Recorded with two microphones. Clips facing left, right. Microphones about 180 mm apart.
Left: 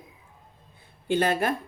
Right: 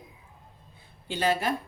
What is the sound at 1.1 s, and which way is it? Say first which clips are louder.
Speech: left 3 dB; 55° left (ahead or behind).